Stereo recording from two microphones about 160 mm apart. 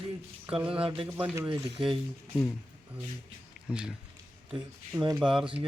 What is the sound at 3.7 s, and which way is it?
Speech, 5° right (ahead or behind).